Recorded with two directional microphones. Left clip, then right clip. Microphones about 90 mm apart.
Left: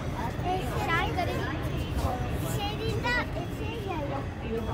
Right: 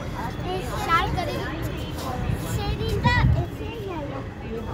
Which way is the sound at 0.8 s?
35° right (ahead or behind).